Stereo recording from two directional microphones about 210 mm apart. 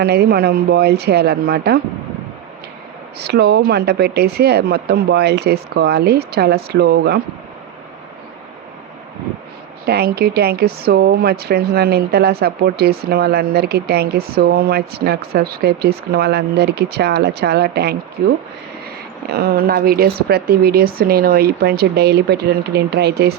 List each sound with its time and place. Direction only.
0.0 s a woman's voice: 50° right (ahead or behind)
3.2 s a woman's voice: 50° right (ahead or behind)
9.8 s a woman's voice: 50° right (ahead or behind)
19.3 s a woman's voice: 45° right (ahead or behind)